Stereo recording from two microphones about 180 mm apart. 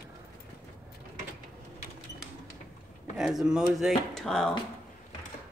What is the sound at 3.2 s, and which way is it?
Speech, centre (ahead or behind).